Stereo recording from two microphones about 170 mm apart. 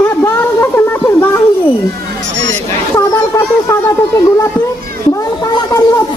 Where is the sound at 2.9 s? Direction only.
20° left (ahead or behind).